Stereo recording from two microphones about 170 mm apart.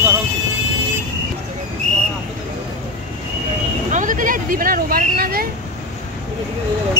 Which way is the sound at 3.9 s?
50° right (ahead or behind).